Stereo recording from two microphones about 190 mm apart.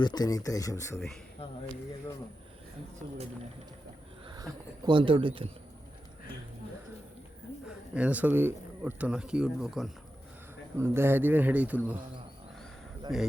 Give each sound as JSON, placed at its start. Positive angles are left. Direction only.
{"t": 0.0, "sound": "speech", "side_deg": 20}
{"t": 0.9, "sound": "speech", "side_deg": 0}
{"t": 1.4, "sound": "a sound", "side_deg": 30}
{"t": 4.3, "sound": "speech", "side_deg": -20}
{"t": 7.9, "sound": "speech", "side_deg": -5}
{"t": 10.8, "sound": "speech", "side_deg": -15}
{"t": 13.1, "sound": "speech", "side_deg": 0}